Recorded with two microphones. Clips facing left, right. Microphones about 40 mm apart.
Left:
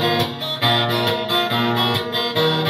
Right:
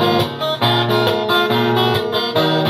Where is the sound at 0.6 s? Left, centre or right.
Right.